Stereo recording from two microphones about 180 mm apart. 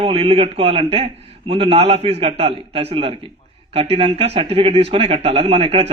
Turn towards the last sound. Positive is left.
turn(degrees=-35)  # may be behind; listen again after turning